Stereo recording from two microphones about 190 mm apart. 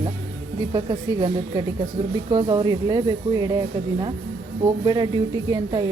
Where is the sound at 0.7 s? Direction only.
25° right (ahead or behind).